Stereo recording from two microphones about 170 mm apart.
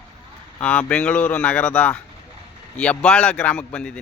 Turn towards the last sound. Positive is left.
turn(degrees=5)  # may be behind; listen again after turning